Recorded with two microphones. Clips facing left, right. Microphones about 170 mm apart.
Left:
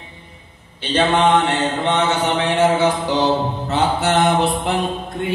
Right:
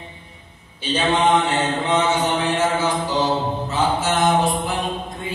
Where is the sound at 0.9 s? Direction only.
60° left (ahead or behind).